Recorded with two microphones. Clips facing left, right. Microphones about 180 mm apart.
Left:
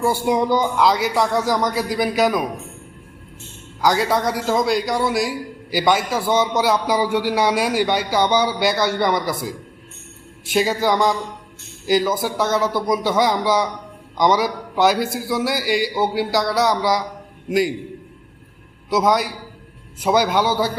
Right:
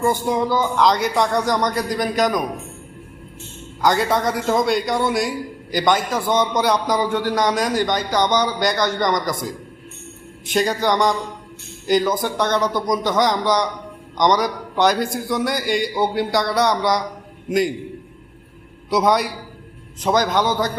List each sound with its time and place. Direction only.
0.0 s a man's voice: 10° left (ahead or behind)
0.8 s a man's voice: 5° left (ahead or behind)
3.8 s a man's voice: centre (ahead or behind)
10.5 s a man's voice: 5° left (ahead or behind)
18.9 s a man's voice: centre (ahead or behind)